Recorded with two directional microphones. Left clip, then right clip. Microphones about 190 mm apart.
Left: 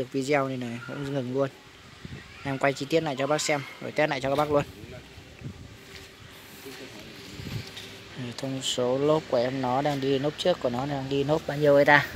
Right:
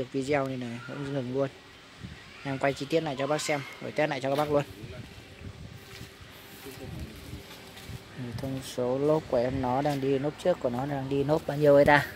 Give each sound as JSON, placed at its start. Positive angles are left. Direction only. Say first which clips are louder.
{"t": 0.1, "sound": "speech", "louder": "left 3 dB", "side_deg": 5}
{"t": 2.4, "sound": "speech", "louder": "left 3 dB", "side_deg": 5}
{"t": 8.4, "sound": "speech", "louder": "left 5 dB", "side_deg": 0}
{"t": 9.3, "sound": "speech", "louder": "left 2 dB", "side_deg": -10}